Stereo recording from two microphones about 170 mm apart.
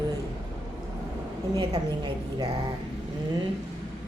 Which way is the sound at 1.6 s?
25° right (ahead or behind).